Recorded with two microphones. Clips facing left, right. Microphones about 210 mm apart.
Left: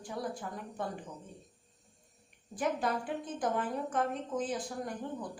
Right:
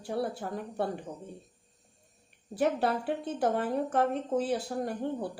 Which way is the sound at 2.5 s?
30° right (ahead or behind).